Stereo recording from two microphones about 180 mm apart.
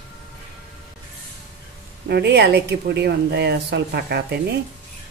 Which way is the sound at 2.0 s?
65° right (ahead or behind).